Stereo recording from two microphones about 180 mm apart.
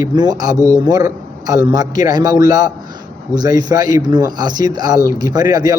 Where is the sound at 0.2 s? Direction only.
20° right (ahead or behind).